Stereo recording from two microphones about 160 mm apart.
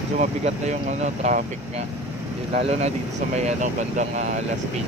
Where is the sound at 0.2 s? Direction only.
45° right (ahead or behind).